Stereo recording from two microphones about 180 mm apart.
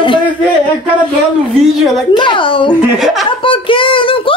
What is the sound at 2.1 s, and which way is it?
Speech, 25° left (ahead or behind).